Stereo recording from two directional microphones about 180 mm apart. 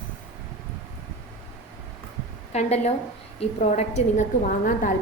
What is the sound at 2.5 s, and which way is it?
Speech, 35° left (ahead or behind).